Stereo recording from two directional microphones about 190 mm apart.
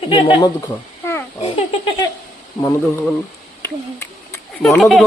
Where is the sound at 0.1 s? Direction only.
25° left (ahead or behind).